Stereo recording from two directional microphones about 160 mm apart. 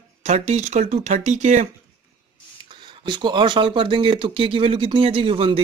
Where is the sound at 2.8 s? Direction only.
30° right (ahead or behind).